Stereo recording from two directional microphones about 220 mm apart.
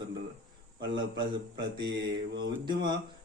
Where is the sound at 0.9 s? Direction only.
20° right (ahead or behind).